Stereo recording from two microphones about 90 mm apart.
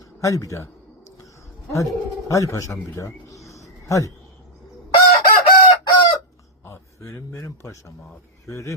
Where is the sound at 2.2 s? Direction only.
35° left (ahead or behind).